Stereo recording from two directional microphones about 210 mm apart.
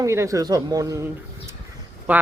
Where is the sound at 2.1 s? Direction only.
10° right (ahead or behind).